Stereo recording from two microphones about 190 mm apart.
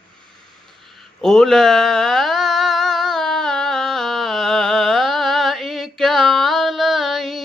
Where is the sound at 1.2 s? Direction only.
Centre (ahead or behind).